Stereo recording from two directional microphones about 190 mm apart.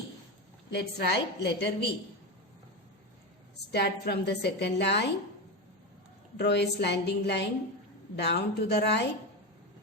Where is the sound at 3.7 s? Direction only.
60° left (ahead or behind).